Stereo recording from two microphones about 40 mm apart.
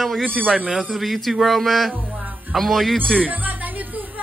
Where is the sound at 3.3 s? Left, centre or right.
Right.